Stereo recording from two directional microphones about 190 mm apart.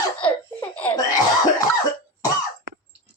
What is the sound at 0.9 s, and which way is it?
Cough, 20° left (ahead or behind).